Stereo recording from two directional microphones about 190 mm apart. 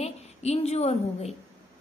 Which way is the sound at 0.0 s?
35° left (ahead or behind).